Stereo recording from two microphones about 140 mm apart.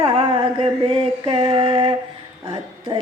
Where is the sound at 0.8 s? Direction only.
40° right (ahead or behind).